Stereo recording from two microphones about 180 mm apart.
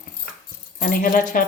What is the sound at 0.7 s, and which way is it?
Speech, 50° left (ahead or behind).